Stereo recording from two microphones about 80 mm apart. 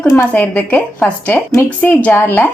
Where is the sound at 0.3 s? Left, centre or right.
Left.